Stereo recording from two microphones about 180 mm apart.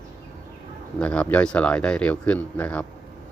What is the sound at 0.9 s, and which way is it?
Speech, 5° left (ahead or behind).